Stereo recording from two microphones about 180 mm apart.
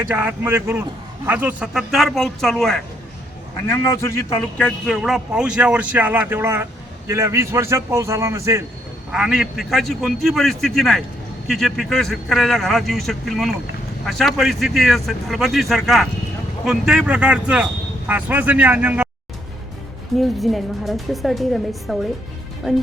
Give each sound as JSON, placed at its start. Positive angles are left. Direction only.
{"t": 0.0, "sound": "a man's voice", "side_deg": -10}
{"t": 3.7, "sound": "a man's voice", "side_deg": 15}
{"t": 9.1, "sound": "a man's voice", "side_deg": -5}
{"t": 20.1, "sound": "a man's voice", "side_deg": 0}